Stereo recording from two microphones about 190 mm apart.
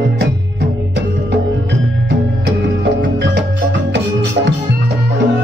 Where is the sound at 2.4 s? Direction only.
65° right (ahead or behind).